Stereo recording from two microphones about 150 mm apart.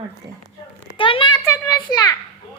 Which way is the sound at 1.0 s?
35° left (ahead or behind).